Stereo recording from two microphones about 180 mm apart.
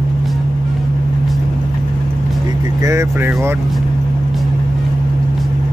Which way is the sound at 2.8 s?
15° right (ahead or behind).